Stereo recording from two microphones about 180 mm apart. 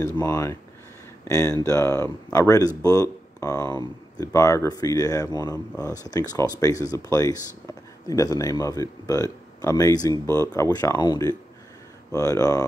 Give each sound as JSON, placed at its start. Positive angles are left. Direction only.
{"t": 0.2, "sound": "speech", "side_deg": 15}